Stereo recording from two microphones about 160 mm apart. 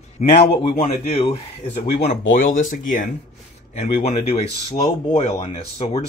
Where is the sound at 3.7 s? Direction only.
40° left (ahead or behind).